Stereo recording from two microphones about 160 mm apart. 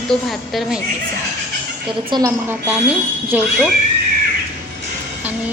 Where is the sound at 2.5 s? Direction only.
10° right (ahead or behind).